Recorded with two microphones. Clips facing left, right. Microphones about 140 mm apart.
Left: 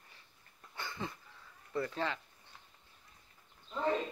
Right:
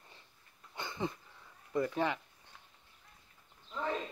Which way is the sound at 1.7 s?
15° right (ahead or behind).